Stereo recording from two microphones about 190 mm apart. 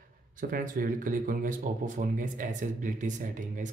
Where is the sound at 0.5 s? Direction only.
45° right (ahead or behind).